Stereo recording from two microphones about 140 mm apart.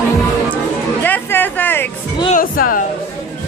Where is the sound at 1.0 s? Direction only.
15° left (ahead or behind).